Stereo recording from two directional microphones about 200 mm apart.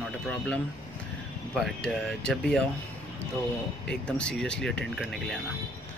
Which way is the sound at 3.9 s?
5° left (ahead or behind).